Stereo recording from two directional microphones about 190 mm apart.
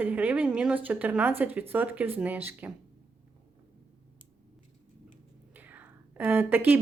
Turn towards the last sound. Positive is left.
turn(degrees=-10)  # may be behind; listen again after turning